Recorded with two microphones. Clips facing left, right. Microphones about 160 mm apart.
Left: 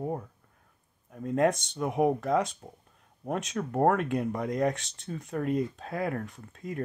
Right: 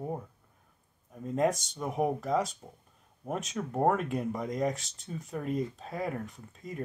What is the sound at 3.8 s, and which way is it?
Speech, 5° right (ahead or behind).